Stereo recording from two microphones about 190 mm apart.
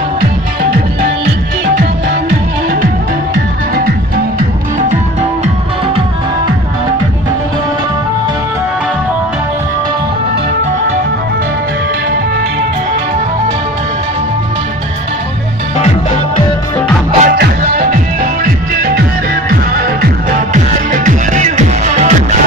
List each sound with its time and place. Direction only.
17.2 s music: 50° right (ahead or behind)